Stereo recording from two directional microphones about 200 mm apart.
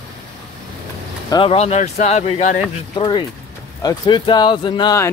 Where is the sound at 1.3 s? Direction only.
25° left (ahead or behind).